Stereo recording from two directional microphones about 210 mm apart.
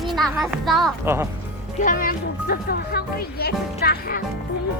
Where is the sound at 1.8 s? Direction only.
40° left (ahead or behind).